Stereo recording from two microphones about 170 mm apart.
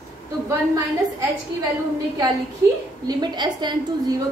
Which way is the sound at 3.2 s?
25° right (ahead or behind).